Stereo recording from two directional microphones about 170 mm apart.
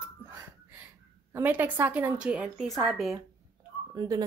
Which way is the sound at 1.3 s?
10° right (ahead or behind).